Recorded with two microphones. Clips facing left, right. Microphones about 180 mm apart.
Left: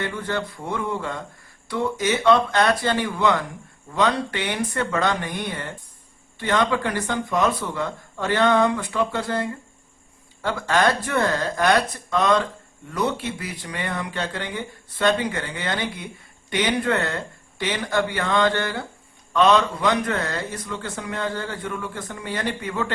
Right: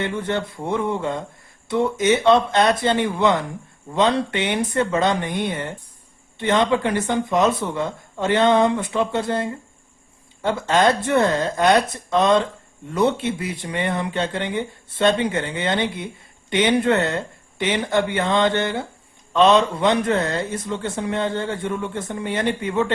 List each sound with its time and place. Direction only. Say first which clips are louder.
0.0 s a man's voice: right 3 dB; 25° right (ahead or behind)